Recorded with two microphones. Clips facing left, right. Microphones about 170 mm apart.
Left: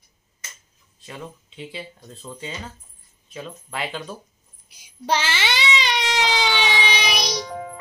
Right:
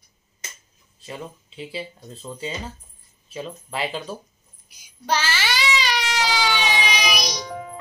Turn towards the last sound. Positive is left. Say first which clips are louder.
# left 1 dB
turn(degrees=30)  # may be behind; listen again after turning